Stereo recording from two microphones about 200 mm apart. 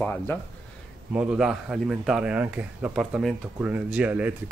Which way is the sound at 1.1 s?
5° right (ahead or behind).